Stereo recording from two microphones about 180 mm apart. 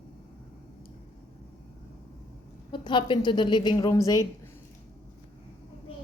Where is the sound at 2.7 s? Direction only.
25° left (ahead or behind).